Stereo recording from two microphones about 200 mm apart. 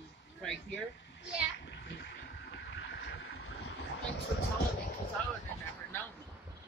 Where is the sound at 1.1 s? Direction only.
60° left (ahead or behind).